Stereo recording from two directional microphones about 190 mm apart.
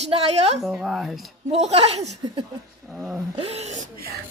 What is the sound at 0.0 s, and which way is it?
Speech, 35° right (ahead or behind).